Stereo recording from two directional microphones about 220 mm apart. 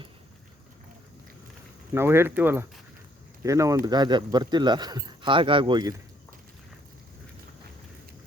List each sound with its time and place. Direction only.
1.9 s speech: 10° right (ahead or behind)